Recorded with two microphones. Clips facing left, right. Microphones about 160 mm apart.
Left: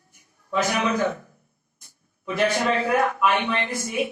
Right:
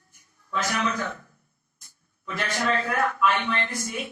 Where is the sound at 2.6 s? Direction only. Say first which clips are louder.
Left 4 dB; 10° left (ahead or behind).